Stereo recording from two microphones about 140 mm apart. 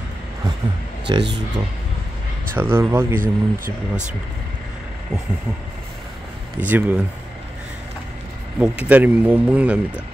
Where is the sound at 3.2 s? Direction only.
70° right (ahead or behind).